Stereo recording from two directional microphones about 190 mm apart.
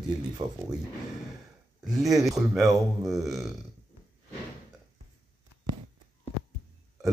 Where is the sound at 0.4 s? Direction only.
20° right (ahead or behind).